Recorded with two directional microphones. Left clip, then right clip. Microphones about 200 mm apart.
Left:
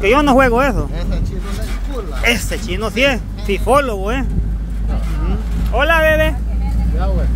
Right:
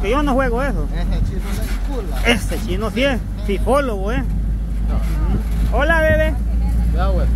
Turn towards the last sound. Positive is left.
turn(degrees=25)  # may be behind; listen again after turning